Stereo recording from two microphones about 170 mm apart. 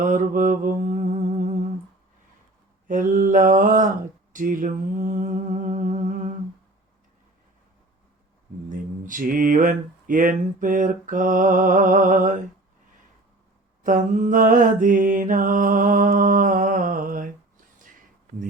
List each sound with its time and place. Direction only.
0.0 s mantra: 50° right (ahead or behind)
2.8 s mantra: 50° right (ahead or behind)
4.3 s a sound: 50° right (ahead or behind)
9.0 s mantra: 55° right (ahead or behind)
13.8 s mantra: 50° right (ahead or behind)